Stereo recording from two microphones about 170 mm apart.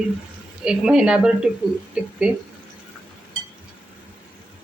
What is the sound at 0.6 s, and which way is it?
Speech, 5° right (ahead or behind).